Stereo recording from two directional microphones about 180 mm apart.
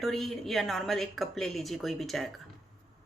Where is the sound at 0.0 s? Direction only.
Centre (ahead or behind).